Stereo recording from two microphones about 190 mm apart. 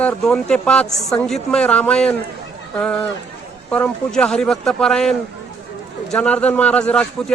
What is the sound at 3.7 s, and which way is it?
Speech, 5° left (ahead or behind).